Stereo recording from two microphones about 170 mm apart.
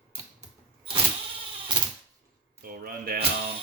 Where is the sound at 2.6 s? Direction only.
60° right (ahead or behind).